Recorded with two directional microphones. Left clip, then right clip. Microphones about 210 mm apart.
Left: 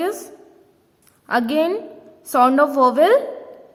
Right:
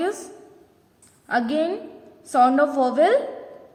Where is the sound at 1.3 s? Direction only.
35° left (ahead or behind).